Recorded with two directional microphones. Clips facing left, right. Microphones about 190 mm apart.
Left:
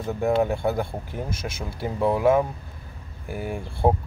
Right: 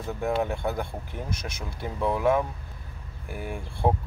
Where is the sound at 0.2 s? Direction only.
10° left (ahead or behind).